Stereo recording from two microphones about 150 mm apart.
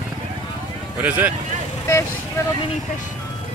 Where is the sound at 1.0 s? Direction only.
10° right (ahead or behind).